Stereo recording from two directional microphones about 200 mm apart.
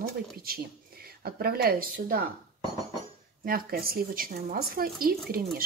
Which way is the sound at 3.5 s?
50° right (ahead or behind).